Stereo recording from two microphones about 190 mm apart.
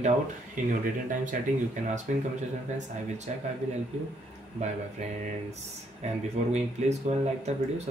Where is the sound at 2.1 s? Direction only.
45° right (ahead or behind).